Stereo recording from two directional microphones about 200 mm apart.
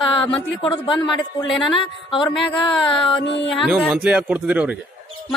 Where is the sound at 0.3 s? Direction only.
25° left (ahead or behind).